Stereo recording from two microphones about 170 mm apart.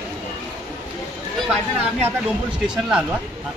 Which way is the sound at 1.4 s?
Centre (ahead or behind).